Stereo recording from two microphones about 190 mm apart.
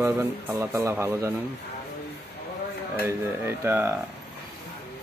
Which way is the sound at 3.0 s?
10° right (ahead or behind).